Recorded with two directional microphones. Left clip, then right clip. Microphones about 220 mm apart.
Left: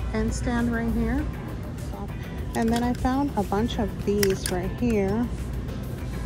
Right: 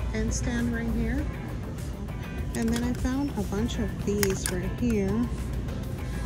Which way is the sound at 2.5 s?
Centre (ahead or behind).